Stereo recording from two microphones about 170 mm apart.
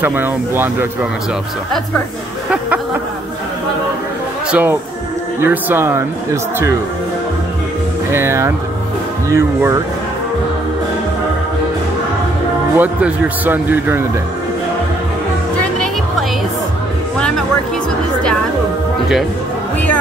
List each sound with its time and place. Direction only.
0.0 s a man's voice: 10° right (ahead or behind)
4.5 s a man's voice: 10° right (ahead or behind)
8.1 s a man's voice: 15° right (ahead or behind)
12.7 s a man's voice: 10° right (ahead or behind)